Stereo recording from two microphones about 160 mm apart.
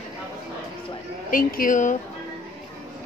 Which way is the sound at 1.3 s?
60° left (ahead or behind).